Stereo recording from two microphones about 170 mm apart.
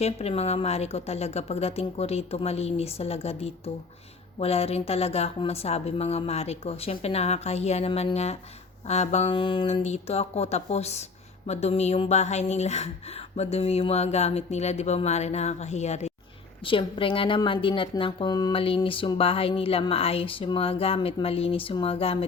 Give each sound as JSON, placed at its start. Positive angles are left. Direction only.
{"t": 0.0, "sound": "a woman's voice", "side_deg": 35}
{"t": 16.6, "sound": "a woman's voice", "side_deg": 30}